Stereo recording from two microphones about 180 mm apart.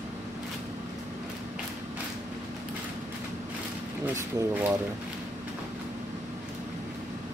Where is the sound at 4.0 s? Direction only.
15° right (ahead or behind).